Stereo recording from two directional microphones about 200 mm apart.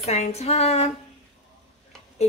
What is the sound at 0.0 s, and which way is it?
Speech, 30° left (ahead or behind).